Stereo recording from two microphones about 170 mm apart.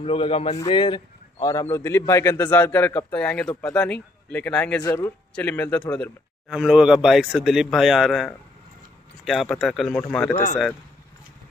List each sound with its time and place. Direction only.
0.0 s a man's voice: 35° left (ahead or behind); by 6.1 s 10° left (ahead or behind)
6.5 s speech: 5° right (ahead or behind)
10.3 s speech: 45° left (ahead or behind)